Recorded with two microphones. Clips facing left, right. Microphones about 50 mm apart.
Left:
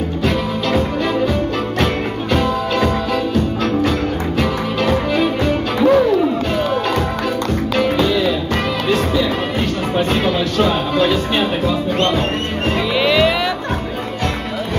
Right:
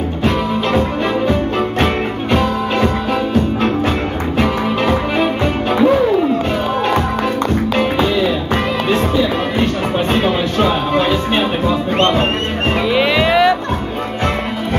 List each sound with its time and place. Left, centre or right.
1.2 s music: right
4.4 s music: right
7.7 s music: right
12.9 s music: centre